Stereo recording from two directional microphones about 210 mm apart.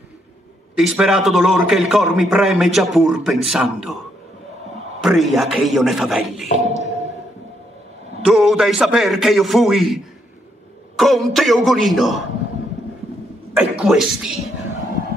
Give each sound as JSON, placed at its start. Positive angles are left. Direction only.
{"t": 0.7, "sound": "a man's voice", "side_deg": -5}
{"t": 5.0, "sound": "a man's voice", "side_deg": 0}
{"t": 6.5, "sound": "tap", "side_deg": -30}
{"t": 8.2, "sound": "a man's voice", "side_deg": 0}
{"t": 13.5, "sound": "a man's voice", "side_deg": -5}